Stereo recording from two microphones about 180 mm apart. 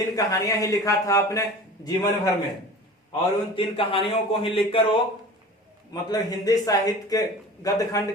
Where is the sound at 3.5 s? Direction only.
30° left (ahead or behind).